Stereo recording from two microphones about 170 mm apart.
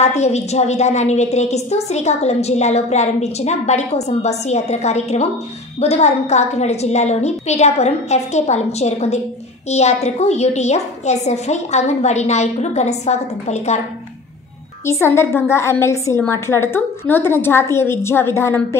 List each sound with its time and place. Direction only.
0.0 s a woman's voice: 40° left (ahead or behind)
14.9 s a woman's voice: 15° left (ahead or behind)